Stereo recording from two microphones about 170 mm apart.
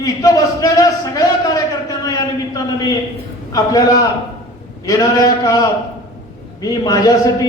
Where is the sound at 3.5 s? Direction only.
20° left (ahead or behind).